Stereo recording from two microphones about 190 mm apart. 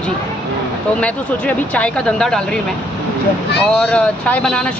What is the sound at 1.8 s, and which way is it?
Speech, 5° left (ahead or behind).